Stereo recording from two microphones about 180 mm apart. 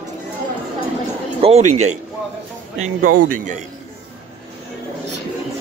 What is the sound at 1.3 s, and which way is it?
Speech, 35° right (ahead or behind).